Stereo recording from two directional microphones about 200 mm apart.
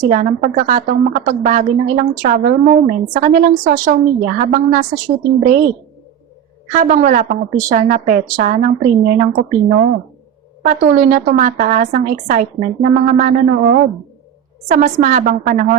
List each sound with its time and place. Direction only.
0.0 s a woman's voice: 40° right (ahead or behind)
6.8 s a woman's voice: 40° right (ahead or behind)